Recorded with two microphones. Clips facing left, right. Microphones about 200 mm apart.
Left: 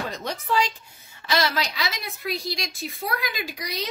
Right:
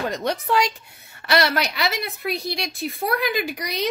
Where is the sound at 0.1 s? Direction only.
65° right (ahead or behind).